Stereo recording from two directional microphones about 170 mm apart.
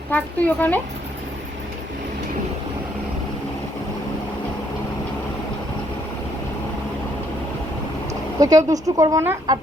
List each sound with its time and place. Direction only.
0.1 s speech: 10° left (ahead or behind)
8.4 s speech: 20° right (ahead or behind)